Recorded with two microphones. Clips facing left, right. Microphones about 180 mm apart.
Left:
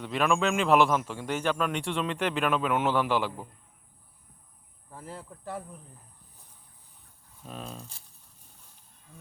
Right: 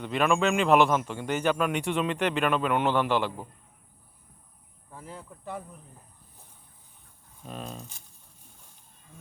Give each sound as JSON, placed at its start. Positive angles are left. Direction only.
{"t": 0.0, "sound": "a man's voice", "side_deg": 0}
{"t": 4.9, "sound": "a sound", "side_deg": 35}
{"t": 7.4, "sound": "a man's voice", "side_deg": 0}